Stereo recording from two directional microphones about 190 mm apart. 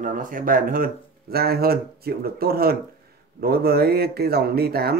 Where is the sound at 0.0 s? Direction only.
45° right (ahead or behind).